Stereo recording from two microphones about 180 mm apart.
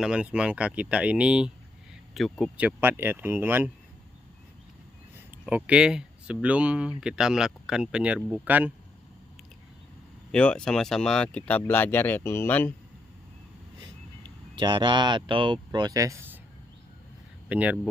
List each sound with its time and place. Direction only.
0.0 s speech: 5° right (ahead or behind)
5.1 s speech: 5° right (ahead or behind)
10.3 s speech: 5° left (ahead or behind)
14.5 s speech: 25° right (ahead or behind)
17.5 s speech: 10° right (ahead or behind)